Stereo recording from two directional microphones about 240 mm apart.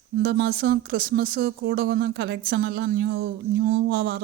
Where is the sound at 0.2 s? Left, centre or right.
Right.